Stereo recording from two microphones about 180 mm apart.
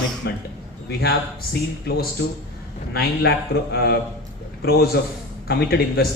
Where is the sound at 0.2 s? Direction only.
65° left (ahead or behind).